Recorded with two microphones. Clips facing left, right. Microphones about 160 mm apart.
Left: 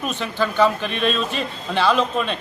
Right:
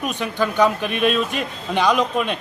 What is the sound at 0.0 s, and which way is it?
A man's voice, 10° right (ahead or behind).